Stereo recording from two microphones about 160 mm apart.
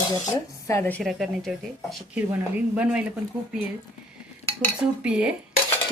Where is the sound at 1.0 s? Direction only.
Centre (ahead or behind).